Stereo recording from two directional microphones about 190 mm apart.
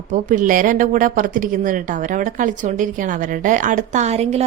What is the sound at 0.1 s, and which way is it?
A woman's voice, 45° right (ahead or behind).